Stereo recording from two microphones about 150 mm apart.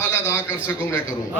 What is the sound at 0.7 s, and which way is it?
Speech, 15° left (ahead or behind).